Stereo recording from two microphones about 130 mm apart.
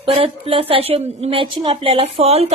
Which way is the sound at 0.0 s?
45° right (ahead or behind).